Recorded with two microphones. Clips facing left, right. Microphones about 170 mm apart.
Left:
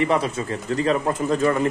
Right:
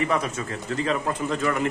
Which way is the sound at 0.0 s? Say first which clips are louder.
Left 4 dB; 30° left (ahead or behind).